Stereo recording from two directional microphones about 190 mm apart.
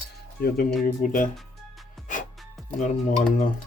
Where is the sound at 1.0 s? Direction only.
45° left (ahead or behind).